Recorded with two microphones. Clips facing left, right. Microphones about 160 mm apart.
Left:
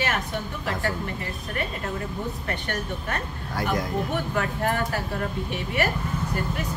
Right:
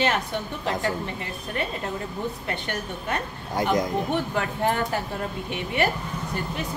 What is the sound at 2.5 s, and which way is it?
Speech, 20° right (ahead or behind).